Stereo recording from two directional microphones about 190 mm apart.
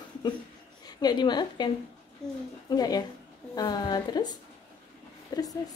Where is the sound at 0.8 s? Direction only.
20° left (ahead or behind).